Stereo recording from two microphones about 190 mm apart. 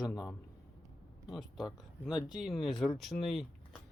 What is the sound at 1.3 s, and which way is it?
Speech, centre (ahead or behind).